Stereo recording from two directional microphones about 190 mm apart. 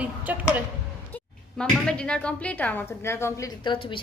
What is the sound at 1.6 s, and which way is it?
Speech, 5° left (ahead or behind).